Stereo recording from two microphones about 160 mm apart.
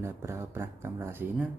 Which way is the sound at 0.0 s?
15° right (ahead or behind).